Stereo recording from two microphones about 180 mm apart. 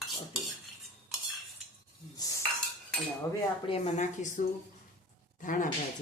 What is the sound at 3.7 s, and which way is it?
Speech, 35° left (ahead or behind).